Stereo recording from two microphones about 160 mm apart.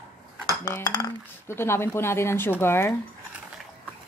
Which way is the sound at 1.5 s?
15° left (ahead or behind).